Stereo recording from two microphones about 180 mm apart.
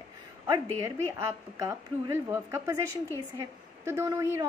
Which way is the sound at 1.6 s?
20° right (ahead or behind).